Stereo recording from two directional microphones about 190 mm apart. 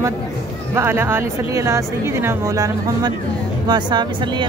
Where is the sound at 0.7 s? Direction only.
10° right (ahead or behind).